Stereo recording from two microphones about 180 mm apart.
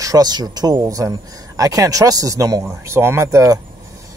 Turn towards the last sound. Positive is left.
turn(degrees=-15)  # may be behind; listen again after turning